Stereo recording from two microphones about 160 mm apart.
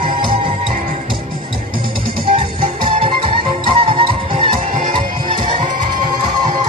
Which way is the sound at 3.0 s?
30° right (ahead or behind).